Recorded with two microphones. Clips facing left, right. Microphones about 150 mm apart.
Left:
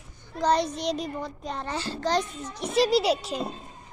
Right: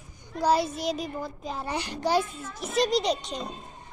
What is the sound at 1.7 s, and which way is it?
Speech, 15° right (ahead or behind).